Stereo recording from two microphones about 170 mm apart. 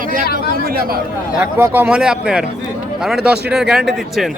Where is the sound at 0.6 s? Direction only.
60° right (ahead or behind).